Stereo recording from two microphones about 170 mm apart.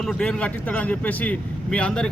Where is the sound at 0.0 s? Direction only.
Centre (ahead or behind).